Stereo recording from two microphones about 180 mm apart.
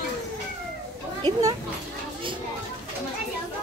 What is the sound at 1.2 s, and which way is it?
Speech, 25° right (ahead or behind).